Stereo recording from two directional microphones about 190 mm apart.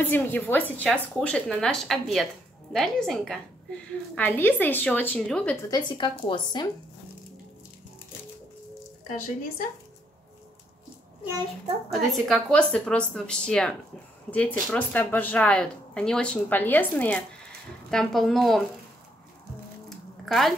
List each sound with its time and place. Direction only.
0.0 s speech: 10° left (ahead or behind)
5.7 s speech: 25° left (ahead or behind)
11.9 s speech: centre (ahead or behind)
19.9 s a sound: centre (ahead or behind)